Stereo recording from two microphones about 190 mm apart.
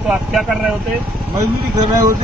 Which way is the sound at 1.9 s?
15° right (ahead or behind).